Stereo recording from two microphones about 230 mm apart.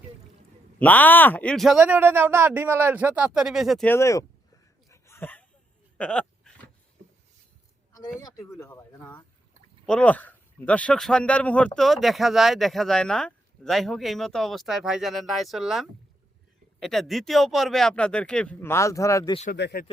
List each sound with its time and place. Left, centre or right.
0.8 s speech: centre
4.9 s a sound: centre
7.9 s a man's voice: centre
19.5 s speech: left